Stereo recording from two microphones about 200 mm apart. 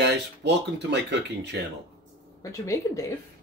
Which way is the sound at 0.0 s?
60° right (ahead or behind).